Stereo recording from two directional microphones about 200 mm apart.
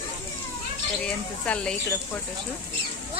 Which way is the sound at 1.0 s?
5° left (ahead or behind).